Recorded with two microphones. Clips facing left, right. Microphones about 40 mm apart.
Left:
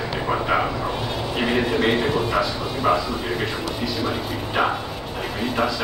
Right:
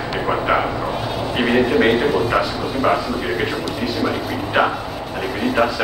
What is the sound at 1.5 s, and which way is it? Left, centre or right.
Speech, centre.